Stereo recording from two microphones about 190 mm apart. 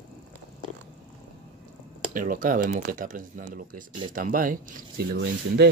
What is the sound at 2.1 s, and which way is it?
Speech, 45° right (ahead or behind).